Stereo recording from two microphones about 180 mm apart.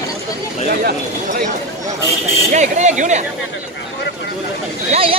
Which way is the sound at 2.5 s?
40° right (ahead or behind).